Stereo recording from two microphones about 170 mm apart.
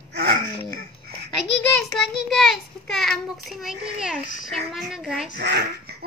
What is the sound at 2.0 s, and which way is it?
A child's voice, centre (ahead or behind).